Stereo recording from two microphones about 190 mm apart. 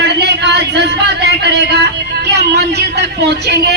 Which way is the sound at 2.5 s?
60° right (ahead or behind).